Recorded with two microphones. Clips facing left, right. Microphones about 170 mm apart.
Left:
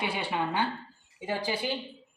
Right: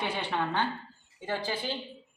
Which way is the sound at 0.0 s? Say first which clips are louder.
Left 1 dB; 10° left (ahead or behind).